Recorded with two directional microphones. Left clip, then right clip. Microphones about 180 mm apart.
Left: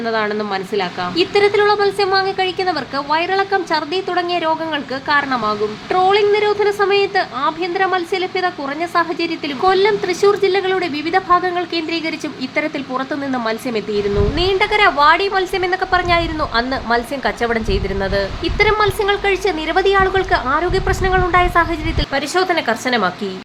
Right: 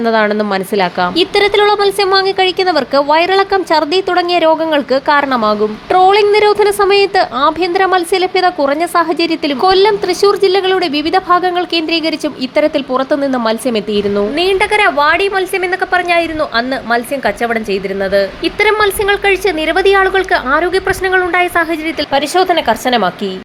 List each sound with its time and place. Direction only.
0.0 s a woman's voice: 40° right (ahead or behind); by 23.1 s 15° right (ahead or behind)